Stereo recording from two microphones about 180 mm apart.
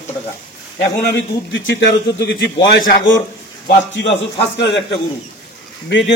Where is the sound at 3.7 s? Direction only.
80° left.